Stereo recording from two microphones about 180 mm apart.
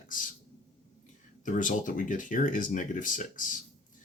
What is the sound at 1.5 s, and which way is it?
Speech, 45° left (ahead or behind).